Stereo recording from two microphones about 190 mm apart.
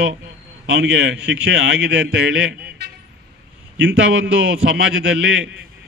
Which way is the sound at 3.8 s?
90° right.